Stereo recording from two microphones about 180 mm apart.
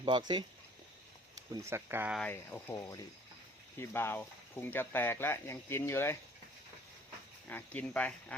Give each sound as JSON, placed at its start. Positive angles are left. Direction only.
{"t": 0.0, "sound": "speech", "side_deg": -25}
{"t": 1.4, "sound": "speech", "side_deg": -15}
{"t": 2.1, "sound": "speech", "side_deg": 5}
{"t": 7.4, "sound": "speech", "side_deg": 10}